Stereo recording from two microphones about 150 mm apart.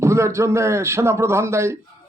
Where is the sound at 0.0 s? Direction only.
20° right (ahead or behind).